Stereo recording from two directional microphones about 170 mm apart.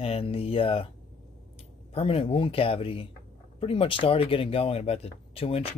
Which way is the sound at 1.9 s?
35° left (ahead or behind).